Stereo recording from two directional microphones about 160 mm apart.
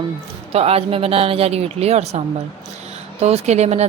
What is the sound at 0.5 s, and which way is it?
Speech, 40° right (ahead or behind).